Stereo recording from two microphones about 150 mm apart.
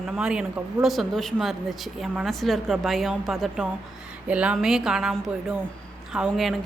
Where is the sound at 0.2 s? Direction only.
5° right (ahead or behind).